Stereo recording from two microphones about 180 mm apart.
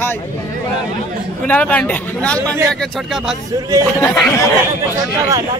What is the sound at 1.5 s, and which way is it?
Speech, 5° left (ahead or behind).